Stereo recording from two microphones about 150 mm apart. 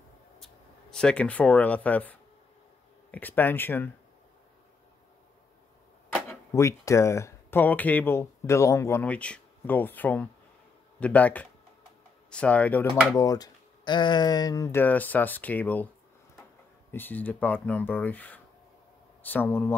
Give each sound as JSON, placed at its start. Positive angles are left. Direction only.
{"t": 0.4, "sound": "speech", "side_deg": 5}
{"t": 6.5, "sound": "speech", "side_deg": 20}
{"t": 13.1, "sound": "speech", "side_deg": 25}
{"t": 16.9, "sound": "speech", "side_deg": 10}